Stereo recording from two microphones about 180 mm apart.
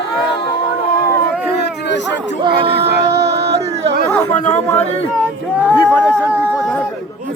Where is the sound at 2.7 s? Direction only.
65° right (ahead or behind).